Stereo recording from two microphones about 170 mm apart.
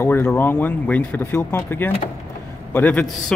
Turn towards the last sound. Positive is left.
turn(degrees=10)  # may be behind; listen again after turning